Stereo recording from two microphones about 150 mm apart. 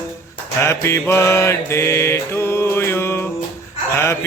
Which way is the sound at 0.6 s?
15° left (ahead or behind).